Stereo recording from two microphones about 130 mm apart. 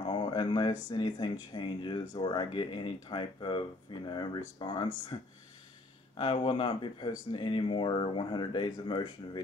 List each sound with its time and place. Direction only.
0.0 s speech: 40° left (ahead or behind)